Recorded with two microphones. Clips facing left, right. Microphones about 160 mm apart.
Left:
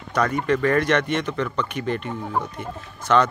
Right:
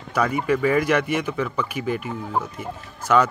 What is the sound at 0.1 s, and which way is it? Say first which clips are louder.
Speech: even; 10° right (ahead or behind).